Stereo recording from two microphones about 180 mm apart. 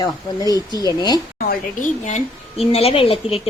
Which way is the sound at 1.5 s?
45° left (ahead or behind).